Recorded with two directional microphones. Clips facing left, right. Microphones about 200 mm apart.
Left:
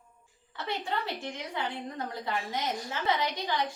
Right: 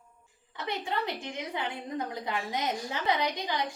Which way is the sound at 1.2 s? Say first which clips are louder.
Even; 15° right (ahead or behind).